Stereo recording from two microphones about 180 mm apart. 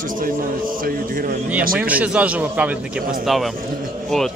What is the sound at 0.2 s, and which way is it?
A man's voice, 50° right (ahead or behind).